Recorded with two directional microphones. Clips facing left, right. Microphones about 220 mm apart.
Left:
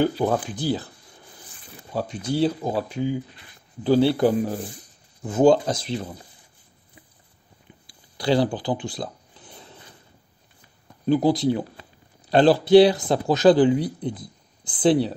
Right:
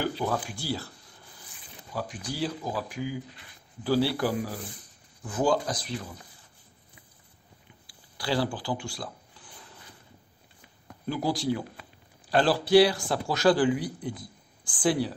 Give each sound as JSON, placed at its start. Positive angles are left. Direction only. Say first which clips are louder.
{"t": 0.0, "sound": "speech", "louder": "left 8 dB", "side_deg": 25}
{"t": 1.9, "sound": "speech", "louder": "left 8 dB", "side_deg": 25}
{"t": 7.8, "sound": "a sound", "louder": "left 9 dB", "side_deg": 20}
{"t": 11.1, "sound": "speech", "louder": "left 8 dB", "side_deg": 20}